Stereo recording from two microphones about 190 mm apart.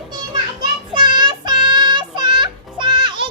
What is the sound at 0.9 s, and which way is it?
Child singing, 25° right (ahead or behind).